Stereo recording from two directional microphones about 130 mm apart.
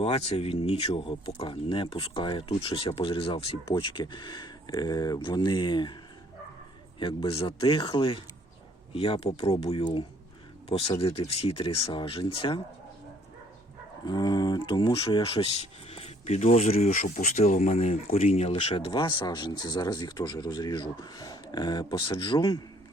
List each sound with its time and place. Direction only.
0.0 s speech: 50° left (ahead or behind)
7.0 s speech: 40° left (ahead or behind)
14.0 s speech: 30° left (ahead or behind); by 18.9 s 50° left (ahead or behind)
18.9 s speech: 35° left (ahead or behind)